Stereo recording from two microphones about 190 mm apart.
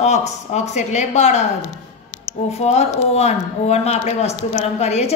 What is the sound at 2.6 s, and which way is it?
Speech, 35° left (ahead or behind).